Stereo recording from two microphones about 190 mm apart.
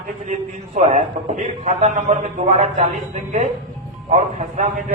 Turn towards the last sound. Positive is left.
turn(degrees=-40)  # may be behind; listen again after turning